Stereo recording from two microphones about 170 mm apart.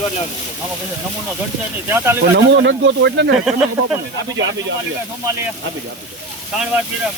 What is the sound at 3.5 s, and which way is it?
Speech, 5° right (ahead or behind).